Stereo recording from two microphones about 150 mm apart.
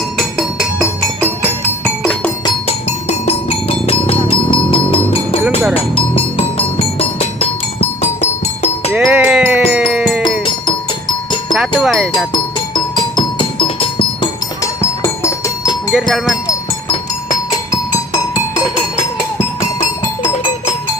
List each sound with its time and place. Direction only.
0.2 s music: centre (ahead or behind)
1.8 s music: 10° left (ahead or behind)
2.6 s music: 45° left (ahead or behind)
8.9 s sheep: 5° right (ahead or behind)
9.8 s music: 5° right (ahead or behind)
11.8 s music: centre (ahead or behind)
12.1 s music: 30° left (ahead or behind)
14.6 s music: 20° left (ahead or behind)
15.9 s speech: centre (ahead or behind)